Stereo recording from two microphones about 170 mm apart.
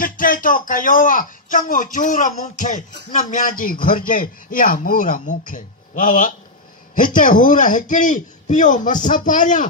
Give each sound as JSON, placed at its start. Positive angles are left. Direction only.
{"t": 0.0, "sound": "a man's voice", "side_deg": 55}